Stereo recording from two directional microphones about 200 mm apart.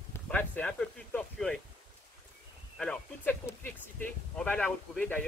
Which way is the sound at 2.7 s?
5° left (ahead or behind).